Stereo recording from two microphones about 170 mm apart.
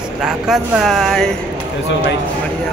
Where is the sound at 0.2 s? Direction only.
5° right (ahead or behind).